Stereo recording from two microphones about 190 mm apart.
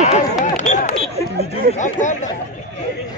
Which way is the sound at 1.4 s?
35° left (ahead or behind).